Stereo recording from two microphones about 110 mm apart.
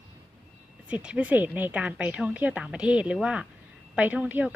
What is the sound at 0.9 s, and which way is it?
A woman's voice, 10° right (ahead or behind).